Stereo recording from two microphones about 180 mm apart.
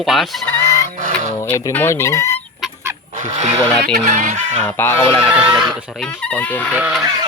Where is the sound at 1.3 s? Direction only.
15° left (ahead or behind).